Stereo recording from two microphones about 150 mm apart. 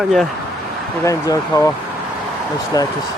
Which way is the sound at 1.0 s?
20° left (ahead or behind).